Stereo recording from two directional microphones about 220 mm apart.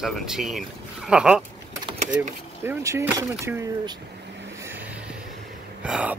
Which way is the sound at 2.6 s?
10° right (ahead or behind).